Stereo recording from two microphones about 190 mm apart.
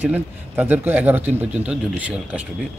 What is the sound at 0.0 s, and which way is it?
Speech, 10° right (ahead or behind).